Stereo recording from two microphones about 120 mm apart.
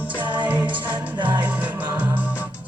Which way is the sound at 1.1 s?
40° right (ahead or behind).